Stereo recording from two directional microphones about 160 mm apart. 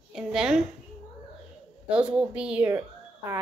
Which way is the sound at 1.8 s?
5° right (ahead or behind).